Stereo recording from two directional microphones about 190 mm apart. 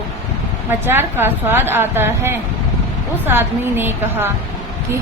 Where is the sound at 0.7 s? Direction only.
10° right (ahead or behind).